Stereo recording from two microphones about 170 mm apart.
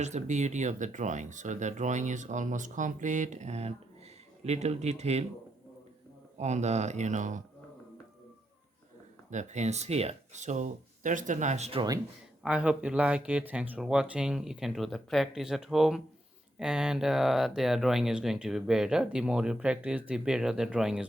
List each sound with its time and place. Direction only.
0.0 s speech: 45° right (ahead or behind)
6.3 s speech: 40° right (ahead or behind)
9.3 s speech: 45° right (ahead or behind)
12.4 s speech: 5° right (ahead or behind)